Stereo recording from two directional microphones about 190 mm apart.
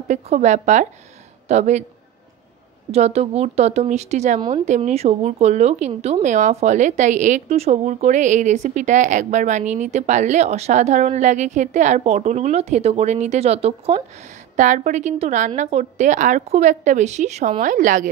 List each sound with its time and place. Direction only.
0.1 s a woman's voice: 40° right (ahead or behind)
2.9 s a woman's voice: 35° right (ahead or behind)